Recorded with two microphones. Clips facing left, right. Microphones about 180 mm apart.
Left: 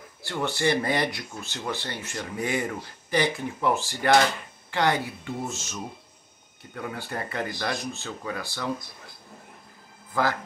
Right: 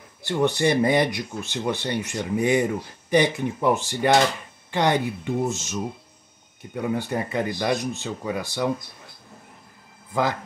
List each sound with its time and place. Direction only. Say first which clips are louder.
0.2 s speech: right 6 dB; 20° right (ahead or behind)